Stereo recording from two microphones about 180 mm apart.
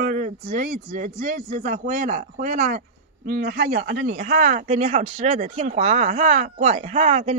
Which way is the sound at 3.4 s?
60° right (ahead or behind).